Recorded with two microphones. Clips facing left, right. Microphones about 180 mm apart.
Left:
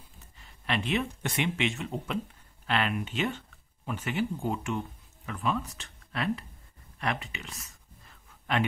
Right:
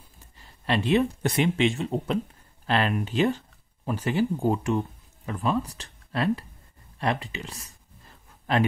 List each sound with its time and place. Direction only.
0.4 s speech: 35° right (ahead or behind)